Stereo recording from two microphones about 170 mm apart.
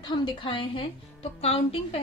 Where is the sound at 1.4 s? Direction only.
35° left (ahead or behind).